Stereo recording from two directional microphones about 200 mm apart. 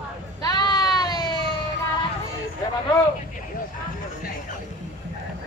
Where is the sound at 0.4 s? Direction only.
20° left (ahead or behind).